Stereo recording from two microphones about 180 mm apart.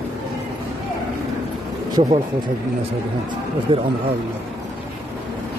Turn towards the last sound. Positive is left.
turn(degrees=-30)  # may be behind; listen again after turning